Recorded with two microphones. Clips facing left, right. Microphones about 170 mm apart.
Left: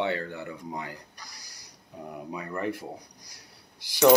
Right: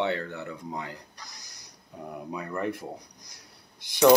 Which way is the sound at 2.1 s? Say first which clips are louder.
Right 1 dB; centre (ahead or behind).